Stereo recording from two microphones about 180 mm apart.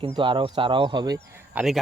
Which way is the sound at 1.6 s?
Centre (ahead or behind).